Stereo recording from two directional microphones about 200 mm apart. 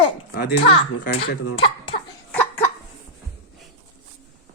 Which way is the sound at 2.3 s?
10° left (ahead or behind).